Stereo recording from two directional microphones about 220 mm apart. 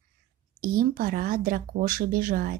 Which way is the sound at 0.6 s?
40° right (ahead or behind).